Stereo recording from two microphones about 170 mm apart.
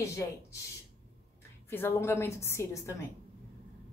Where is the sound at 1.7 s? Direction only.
15° left (ahead or behind).